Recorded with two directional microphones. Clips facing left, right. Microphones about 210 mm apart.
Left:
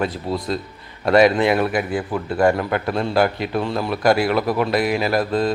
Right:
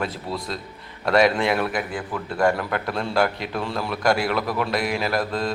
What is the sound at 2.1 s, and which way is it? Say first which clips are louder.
Speech: left 3 dB; 25° left (ahead or behind).